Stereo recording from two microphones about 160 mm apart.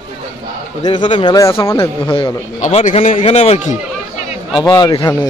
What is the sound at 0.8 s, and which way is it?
Speech, 30° left (ahead or behind).